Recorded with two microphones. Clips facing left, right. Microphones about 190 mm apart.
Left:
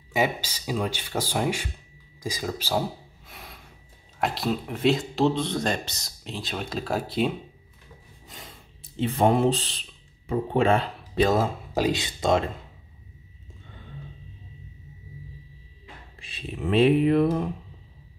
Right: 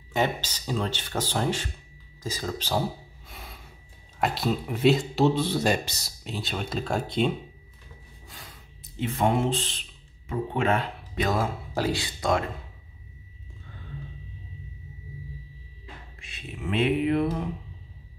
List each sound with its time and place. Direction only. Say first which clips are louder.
0.1 s speech: left 1 dB; 10° left (ahead or behind)
3.3 s gasp: even; centre (ahead or behind)
4.2 s speech: even; centre (ahead or behind)
8.3 s speech: left 3 dB; 25° left (ahead or behind)
16.2 s a sound: left 6 dB; 30° left (ahead or behind)